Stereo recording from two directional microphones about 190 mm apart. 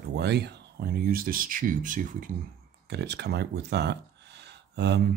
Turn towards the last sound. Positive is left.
turn(degrees=-60)  # may be behind; listen again after turning